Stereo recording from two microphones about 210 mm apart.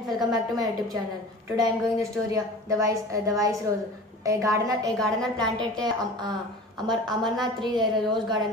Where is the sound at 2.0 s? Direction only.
15° right (ahead or behind).